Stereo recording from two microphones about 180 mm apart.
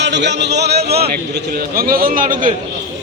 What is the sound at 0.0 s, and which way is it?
A man's voice, 75° right (ahead or behind).